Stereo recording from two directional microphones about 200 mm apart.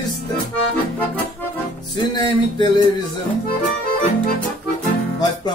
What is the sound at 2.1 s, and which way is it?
Speech, 20° left (ahead or behind).